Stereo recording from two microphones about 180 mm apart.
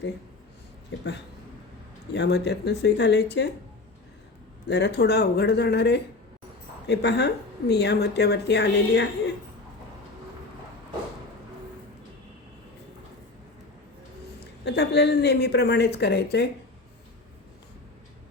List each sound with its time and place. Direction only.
0.9 s speech: 75° left (ahead or behind)
4.7 s speech: 70° left (ahead or behind)
14.6 s speech: 70° left (ahead or behind)